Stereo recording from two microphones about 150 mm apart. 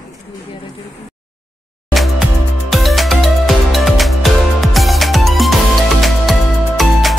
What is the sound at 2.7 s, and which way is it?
Music, centre (ahead or behind).